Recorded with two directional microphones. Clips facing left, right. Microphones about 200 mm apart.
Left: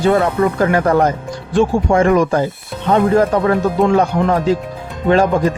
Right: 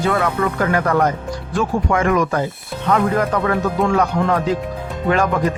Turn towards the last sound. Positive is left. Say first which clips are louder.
# left 4 dB
turn(degrees=30)  # may be behind; listen again after turning